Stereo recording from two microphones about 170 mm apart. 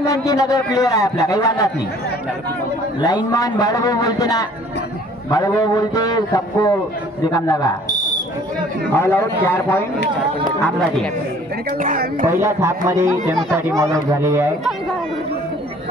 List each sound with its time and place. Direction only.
0.0 s a man's voice: 20° left (ahead or behind)
3.0 s a man's voice: 25° left (ahead or behind)
8.9 s a man's voice: 15° left (ahead or behind)
11.8 s speech: 55° right (ahead or behind)
12.3 s speech: 15° right (ahead or behind)